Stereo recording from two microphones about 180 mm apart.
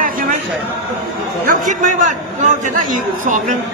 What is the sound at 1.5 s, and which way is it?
A man's voice, 45° right (ahead or behind).